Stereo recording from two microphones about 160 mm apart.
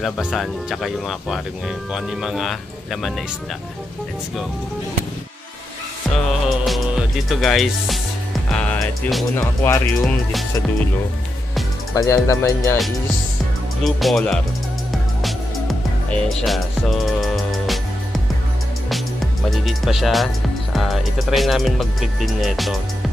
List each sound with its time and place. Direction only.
0.0 s speech: centre (ahead or behind)
6.1 s music: centre (ahead or behind)
8.5 s speech: 5° left (ahead or behind)
11.9 s speech: 20° left (ahead or behind)
13.8 s speech: centre (ahead or behind)
16.1 s speech: 5° left (ahead or behind)
19.5 s speech: centre (ahead or behind)